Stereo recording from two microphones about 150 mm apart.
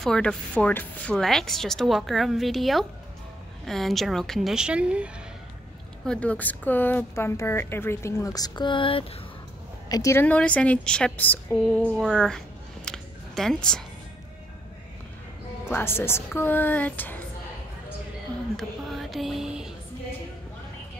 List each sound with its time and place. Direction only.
0.0 s speech: 5° left (ahead or behind)
6.0 s a woman's voice: 10° left (ahead or behind); by 9.0 s 35° left (ahead or behind)
9.8 s speech: 25° left (ahead or behind)
10.2 s a woman's voice: 10° left (ahead or behind)
12.0 s a sound: 5° left (ahead or behind)
15.7 s a woman's voice: 15° left (ahead or behind)
18.6 s a sound: centre (ahead or behind)